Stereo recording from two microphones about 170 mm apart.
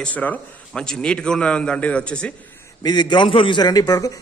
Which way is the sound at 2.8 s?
25° left (ahead or behind).